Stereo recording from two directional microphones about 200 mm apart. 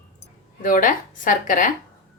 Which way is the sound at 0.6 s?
40° left (ahead or behind).